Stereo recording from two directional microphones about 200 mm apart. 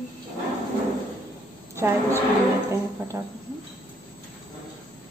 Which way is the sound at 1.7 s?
15° right (ahead or behind).